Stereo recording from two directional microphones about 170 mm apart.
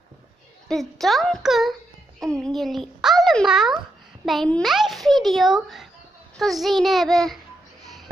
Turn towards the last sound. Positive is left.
turn(degrees=0)  # may be behind; listen again after turning